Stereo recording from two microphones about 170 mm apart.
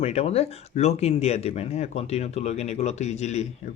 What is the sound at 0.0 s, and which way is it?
Speech, 35° left (ahead or behind).